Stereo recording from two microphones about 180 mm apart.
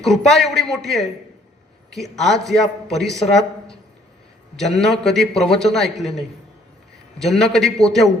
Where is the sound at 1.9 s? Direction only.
Centre (ahead or behind).